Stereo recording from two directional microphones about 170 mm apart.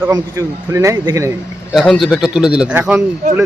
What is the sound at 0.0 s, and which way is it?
A man's voice, 15° right (ahead or behind).